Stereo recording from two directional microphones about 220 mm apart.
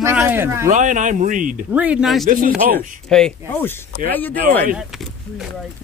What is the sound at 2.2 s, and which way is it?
Speech, 40° right (ahead or behind).